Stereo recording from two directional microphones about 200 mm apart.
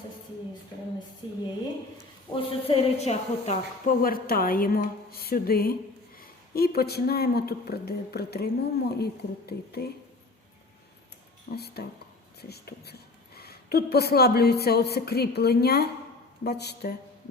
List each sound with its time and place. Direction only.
2.3 s a woman's voice: 30° left (ahead or behind); by 9.9 s 50° left (ahead or behind)
11.5 s a woman's voice: 50° left (ahead or behind)